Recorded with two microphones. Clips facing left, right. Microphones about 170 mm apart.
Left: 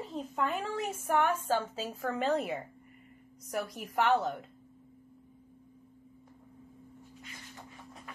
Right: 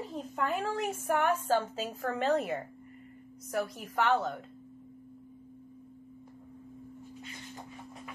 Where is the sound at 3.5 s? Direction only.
35° right (ahead or behind).